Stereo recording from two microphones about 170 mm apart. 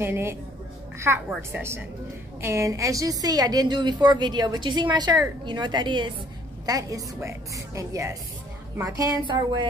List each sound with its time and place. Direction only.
0.0 s a woman's voice: 15° right (ahead or behind)